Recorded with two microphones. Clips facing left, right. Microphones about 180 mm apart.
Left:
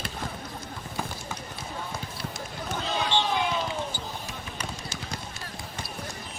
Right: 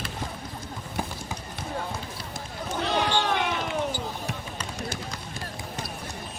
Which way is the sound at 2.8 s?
70° right (ahead or behind).